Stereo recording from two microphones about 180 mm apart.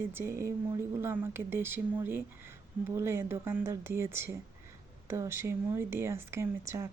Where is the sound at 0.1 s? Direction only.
15° right (ahead or behind).